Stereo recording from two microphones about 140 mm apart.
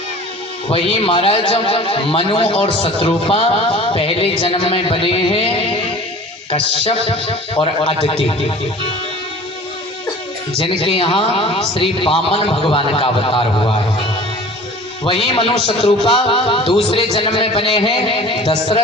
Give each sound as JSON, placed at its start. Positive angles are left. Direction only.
{"t": 0.7, "sound": "speech", "side_deg": 45}
{"t": 10.6, "sound": "speech", "side_deg": 40}
{"t": 15.0, "sound": "speech", "side_deg": 40}